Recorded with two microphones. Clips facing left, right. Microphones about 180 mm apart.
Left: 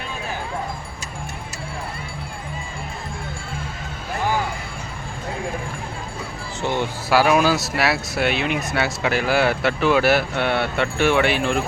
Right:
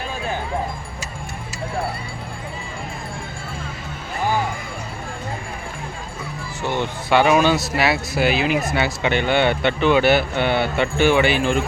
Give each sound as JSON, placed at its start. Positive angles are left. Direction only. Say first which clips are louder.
{"t": 6.6, "sound": "speech", "louder": "even", "side_deg": 15}
{"t": 7.1, "sound": "speech", "louder": "right 1 dB", "side_deg": 0}